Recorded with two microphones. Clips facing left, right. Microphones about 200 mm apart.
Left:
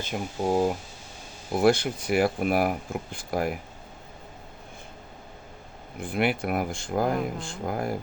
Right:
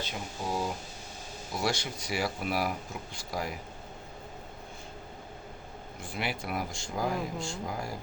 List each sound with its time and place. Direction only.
0.0 s speech: 50° left (ahead or behind)
6.0 s speech: 55° left (ahead or behind)